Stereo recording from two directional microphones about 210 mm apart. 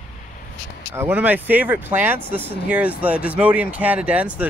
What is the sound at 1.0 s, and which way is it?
Speech, 10° right (ahead or behind).